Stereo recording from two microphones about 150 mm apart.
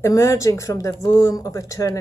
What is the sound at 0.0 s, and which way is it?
A woman's voice, 20° left (ahead or behind).